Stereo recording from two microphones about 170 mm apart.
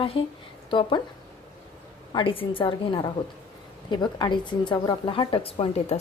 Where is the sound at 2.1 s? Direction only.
30° left (ahead or behind).